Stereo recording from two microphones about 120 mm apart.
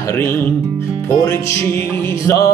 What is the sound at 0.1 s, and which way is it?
Speech, 20° left (ahead or behind).